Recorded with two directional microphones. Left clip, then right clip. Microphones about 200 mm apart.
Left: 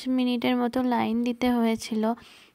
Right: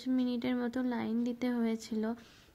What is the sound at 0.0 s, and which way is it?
Speech, 35° left (ahead or behind).